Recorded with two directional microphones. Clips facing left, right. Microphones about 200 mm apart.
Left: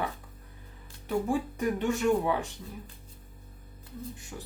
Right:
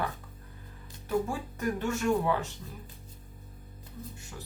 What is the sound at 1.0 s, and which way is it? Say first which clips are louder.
Speech: left 2 dB; 15° left (ahead or behind).